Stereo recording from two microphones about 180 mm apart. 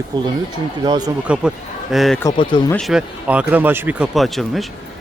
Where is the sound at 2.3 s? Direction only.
25° left (ahead or behind).